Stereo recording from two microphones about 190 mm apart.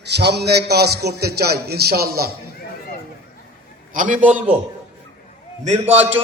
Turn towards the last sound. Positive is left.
turn(degrees=-35)  # may be behind; listen again after turning